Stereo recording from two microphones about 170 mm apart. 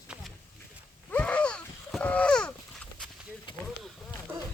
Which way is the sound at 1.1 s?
5° left (ahead or behind).